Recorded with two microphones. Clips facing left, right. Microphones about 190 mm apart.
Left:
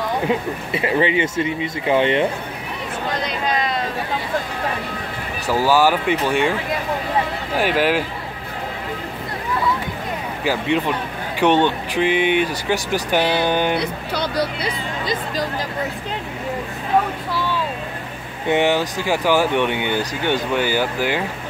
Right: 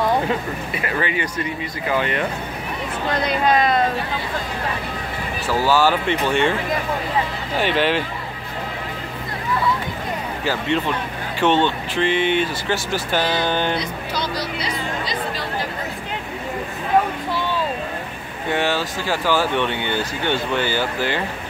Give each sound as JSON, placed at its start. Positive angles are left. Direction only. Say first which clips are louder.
{"t": 0.7, "sound": "speech", "louder": "left 6 dB", "side_deg": 25}
{"t": 3.3, "sound": "speech", "louder": "right 8 dB", "side_deg": -55}
{"t": 5.5, "sound": "speech", "louder": "left 2 dB", "side_deg": 10}
{"t": 7.5, "sound": "speech", "louder": "left 1 dB", "side_deg": 5}
{"t": 10.4, "sound": "speech", "louder": "left 2 dB", "side_deg": 10}
{"t": 13.7, "sound": "speech", "louder": "left 2 dB", "side_deg": 60}
{"t": 18.5, "sound": "speech", "louder": "left 4 dB", "side_deg": 20}